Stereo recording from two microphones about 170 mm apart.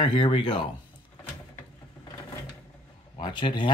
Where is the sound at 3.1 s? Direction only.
30° left (ahead or behind).